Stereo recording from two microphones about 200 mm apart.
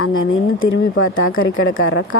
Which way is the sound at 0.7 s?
75° left (ahead or behind).